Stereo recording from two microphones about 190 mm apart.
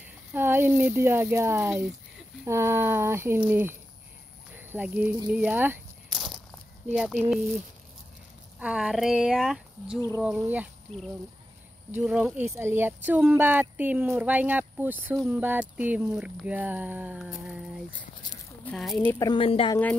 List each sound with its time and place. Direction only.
0.3 s speech: 10° right (ahead or behind)
6.0 s a sound: centre (ahead or behind)
6.9 s speech: 5° right (ahead or behind)
9.9 s speech: 15° left (ahead or behind)
10.2 s speech: 5° right (ahead or behind)
10.9 s speech: 5° left (ahead or behind)
11.9 s speech: 5° right (ahead or behind)
18.2 s a sound: 20° left (ahead or behind)
18.7 s speech: 5° left (ahead or behind); by 19.8 s 30° left (ahead or behind)